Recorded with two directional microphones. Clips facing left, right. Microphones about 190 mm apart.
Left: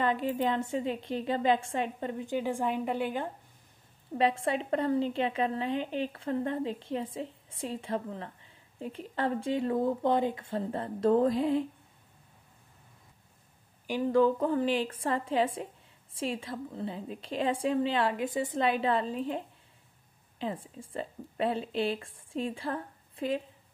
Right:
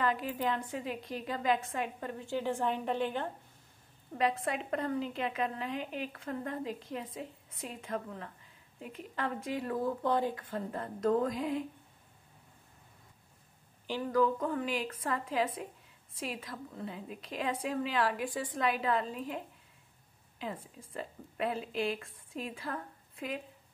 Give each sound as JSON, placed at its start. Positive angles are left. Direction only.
{"t": 0.0, "sound": "a woman's voice", "side_deg": 25}
{"t": 4.2, "sound": "a woman's voice", "side_deg": 30}
{"t": 13.8, "sound": "speech", "side_deg": 15}
{"t": 14.1, "sound": "a woman's voice", "side_deg": 30}